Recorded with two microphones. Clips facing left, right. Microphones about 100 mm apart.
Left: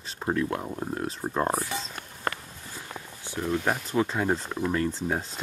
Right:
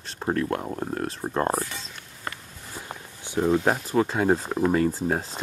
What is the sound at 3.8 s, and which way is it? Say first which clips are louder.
Speech: right 4 dB; centre (ahead or behind).